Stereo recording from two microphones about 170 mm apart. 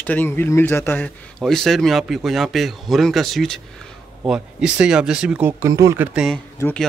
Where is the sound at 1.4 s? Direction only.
Centre (ahead or behind).